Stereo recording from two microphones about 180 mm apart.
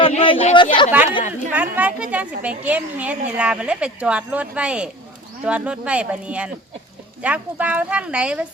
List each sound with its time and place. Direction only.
0.0 s a woman's voice: 30° left (ahead or behind)
0.9 s a woman's voice: 10° right (ahead or behind)